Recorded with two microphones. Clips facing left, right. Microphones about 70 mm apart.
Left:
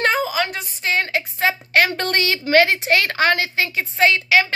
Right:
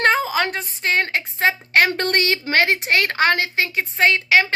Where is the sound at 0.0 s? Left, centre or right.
Right.